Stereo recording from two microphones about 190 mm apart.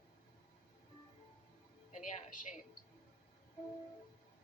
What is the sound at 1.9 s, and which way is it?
Speech, 45° left (ahead or behind).